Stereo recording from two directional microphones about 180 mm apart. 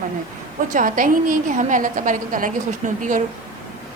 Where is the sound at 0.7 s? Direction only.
50° right (ahead or behind).